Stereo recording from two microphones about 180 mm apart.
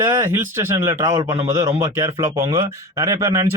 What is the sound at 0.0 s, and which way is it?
Speech, 15° right (ahead or behind).